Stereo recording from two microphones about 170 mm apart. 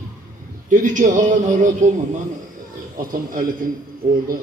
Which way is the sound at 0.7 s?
50° right (ahead or behind).